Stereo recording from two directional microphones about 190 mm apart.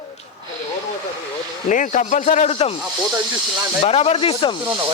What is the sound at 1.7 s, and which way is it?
A man's voice, 45° left (ahead or behind).